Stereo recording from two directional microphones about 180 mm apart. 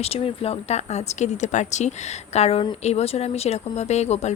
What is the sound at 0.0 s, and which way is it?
Speech, 30° left (ahead or behind).